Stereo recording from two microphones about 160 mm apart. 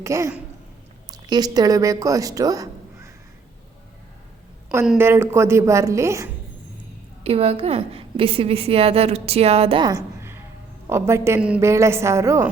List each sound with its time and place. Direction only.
0.0 s a woman's voice: 20° right (ahead or behind)
4.9 s a woman's voice: 15° right (ahead or behind)
7.3 s a woman's voice: 40° right (ahead or behind); by 12.5 s 20° right (ahead or behind)